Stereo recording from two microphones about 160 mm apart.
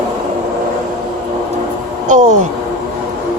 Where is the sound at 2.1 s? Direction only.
50° right (ahead or behind).